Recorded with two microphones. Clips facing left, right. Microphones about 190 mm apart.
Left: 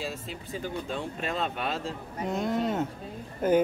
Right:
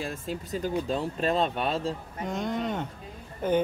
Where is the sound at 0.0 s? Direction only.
50° right (ahead or behind).